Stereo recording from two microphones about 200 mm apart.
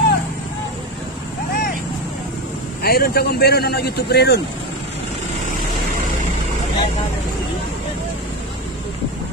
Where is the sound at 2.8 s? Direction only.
50° left (ahead or behind).